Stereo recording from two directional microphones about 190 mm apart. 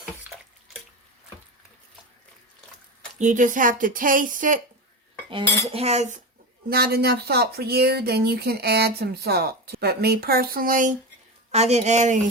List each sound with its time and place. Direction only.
0.0 s water: 5° right (ahead or behind)
3.2 s speech: 40° right (ahead or behind)
5.3 s cutlery: 30° right (ahead or behind)
6.7 s speech: 55° right (ahead or behind)
11.5 s cutlery: 35° right (ahead or behind)